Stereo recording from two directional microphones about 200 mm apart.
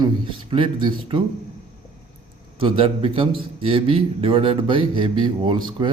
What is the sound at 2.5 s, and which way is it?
A man's voice, 25° right (ahead or behind).